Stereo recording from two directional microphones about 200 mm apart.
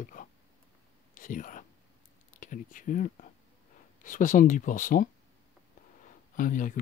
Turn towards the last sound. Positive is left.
turn(degrees=40)  # may be behind; listen again after turning